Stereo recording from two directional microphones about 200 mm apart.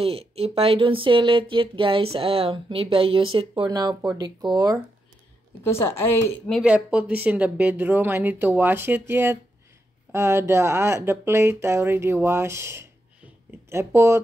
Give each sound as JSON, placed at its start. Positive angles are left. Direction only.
{"t": 0.0, "sound": "speech", "side_deg": -30}
{"t": 5.6, "sound": "a woman's voice", "side_deg": 10}
{"t": 6.6, "sound": "speech", "side_deg": -5}